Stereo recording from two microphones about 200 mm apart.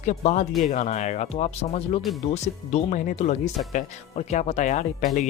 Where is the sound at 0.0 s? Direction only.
35° left (ahead or behind).